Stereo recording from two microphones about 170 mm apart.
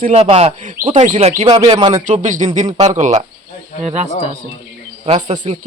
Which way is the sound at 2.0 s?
45° right (ahead or behind).